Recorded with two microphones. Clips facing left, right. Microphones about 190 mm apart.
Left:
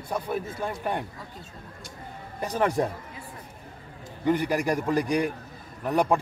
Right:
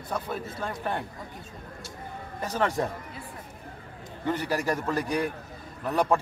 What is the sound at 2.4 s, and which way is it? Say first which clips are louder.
Speech: left 2 dB; 15° left (ahead or behind).